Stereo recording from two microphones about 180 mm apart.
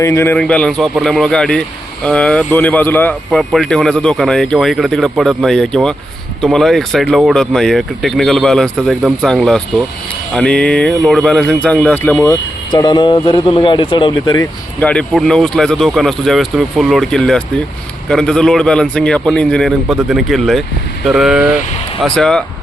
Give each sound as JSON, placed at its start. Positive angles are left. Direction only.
{"t": 0.0, "sound": "speech", "side_deg": 15}
{"t": 14.8, "sound": "speech", "side_deg": 5}